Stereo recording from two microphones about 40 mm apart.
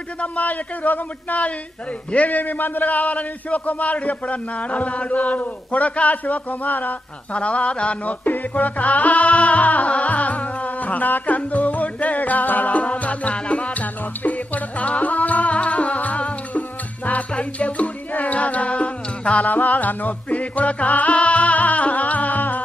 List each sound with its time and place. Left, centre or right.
0.2 s a man's voice: left
7.3 s music: left